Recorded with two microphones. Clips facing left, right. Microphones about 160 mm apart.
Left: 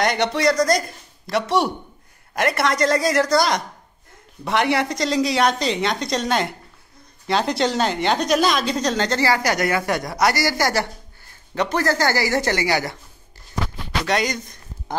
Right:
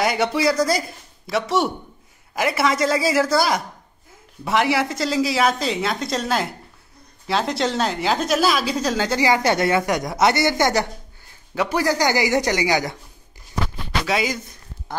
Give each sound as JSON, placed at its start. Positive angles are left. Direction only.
{"t": 0.0, "sound": "a woman's voice", "side_deg": -5}
{"t": 9.3, "sound": "a man's voice", "side_deg": -25}
{"t": 11.5, "sound": "a man's voice", "side_deg": -10}
{"t": 14.0, "sound": "a woman's voice", "side_deg": -5}